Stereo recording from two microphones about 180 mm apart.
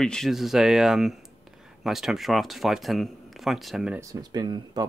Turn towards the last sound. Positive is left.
turn(degrees=-20)  # may be behind; listen again after turning